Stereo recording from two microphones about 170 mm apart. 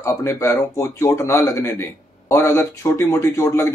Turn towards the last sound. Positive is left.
turn(degrees=15)  # may be behind; listen again after turning